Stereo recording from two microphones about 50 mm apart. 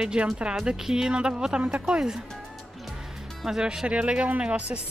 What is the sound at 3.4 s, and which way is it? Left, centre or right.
A woman's voice, centre.